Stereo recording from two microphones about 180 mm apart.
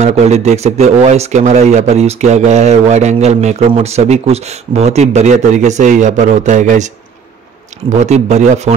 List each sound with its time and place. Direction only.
0.0 s speech: 40° right (ahead or behind)
8.0 s speech: 40° right (ahead or behind)